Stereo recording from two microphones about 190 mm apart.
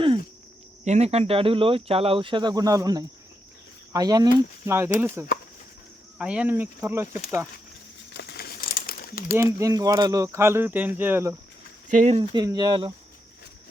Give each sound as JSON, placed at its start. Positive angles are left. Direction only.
{"t": 0.9, "sound": "speech", "side_deg": -35}
{"t": 8.1, "sound": "crumpling", "side_deg": 60}
{"t": 9.4, "sound": "speech", "side_deg": -15}
{"t": 11.9, "sound": "speech", "side_deg": -40}
{"t": 12.3, "sound": "speech", "side_deg": -20}